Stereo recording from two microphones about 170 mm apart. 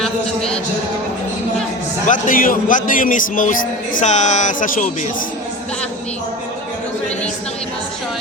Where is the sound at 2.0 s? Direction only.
50° left (ahead or behind).